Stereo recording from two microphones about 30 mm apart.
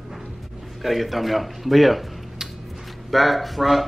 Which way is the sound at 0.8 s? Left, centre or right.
Centre.